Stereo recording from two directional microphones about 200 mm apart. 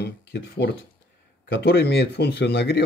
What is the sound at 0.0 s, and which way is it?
Speech, 55° left (ahead or behind).